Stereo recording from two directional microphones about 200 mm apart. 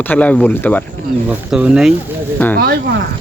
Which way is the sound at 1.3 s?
5° right (ahead or behind).